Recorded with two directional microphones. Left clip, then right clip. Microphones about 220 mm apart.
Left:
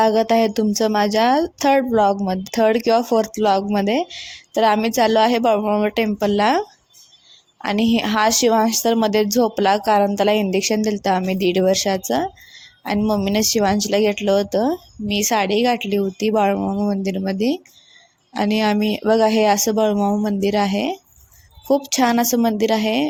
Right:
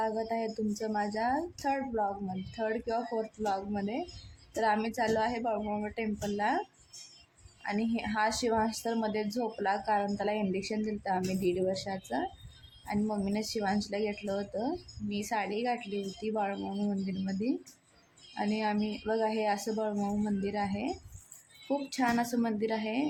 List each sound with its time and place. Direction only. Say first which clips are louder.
0.0 s a woman's voice: left 17 dB; 35° left (ahead or behind)
7.6 s a woman's voice: left 14 dB; 35° left (ahead or behind)